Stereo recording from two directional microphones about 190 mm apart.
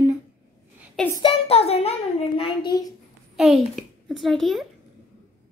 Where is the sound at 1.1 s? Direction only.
30° left (ahead or behind).